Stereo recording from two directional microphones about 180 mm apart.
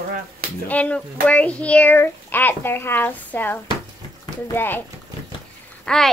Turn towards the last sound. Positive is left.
turn(degrees=5)  # may be behind; listen again after turning